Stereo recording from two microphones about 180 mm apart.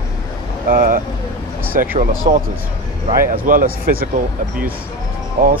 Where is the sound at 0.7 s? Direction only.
50° right (ahead or behind).